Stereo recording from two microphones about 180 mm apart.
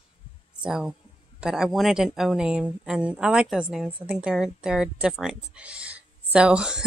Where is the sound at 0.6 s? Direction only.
5° right (ahead or behind).